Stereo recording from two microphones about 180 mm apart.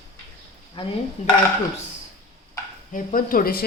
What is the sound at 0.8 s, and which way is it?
Stir, 25° left (ahead or behind).